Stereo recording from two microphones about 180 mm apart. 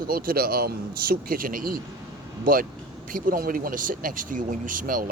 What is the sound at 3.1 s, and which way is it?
Speech, 50° right (ahead or behind).